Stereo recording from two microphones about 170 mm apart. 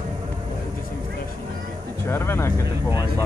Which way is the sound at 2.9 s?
15° right (ahead or behind).